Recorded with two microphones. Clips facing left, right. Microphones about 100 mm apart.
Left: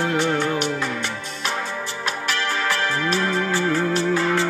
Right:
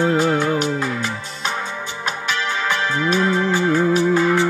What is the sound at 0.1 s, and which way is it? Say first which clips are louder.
Music: right 3 dB; 40° right (ahead or behind).